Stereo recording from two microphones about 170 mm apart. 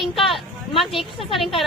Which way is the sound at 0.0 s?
Centre (ahead or behind).